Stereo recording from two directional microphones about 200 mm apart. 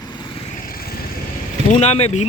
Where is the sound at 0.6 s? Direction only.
50° left (ahead or behind).